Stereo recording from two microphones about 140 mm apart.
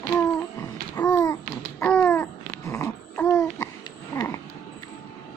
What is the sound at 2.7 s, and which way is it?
Dog, 20° left (ahead or behind).